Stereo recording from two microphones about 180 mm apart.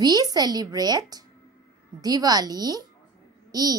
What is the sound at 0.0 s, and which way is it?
A woman's voice, 20° right (ahead or behind).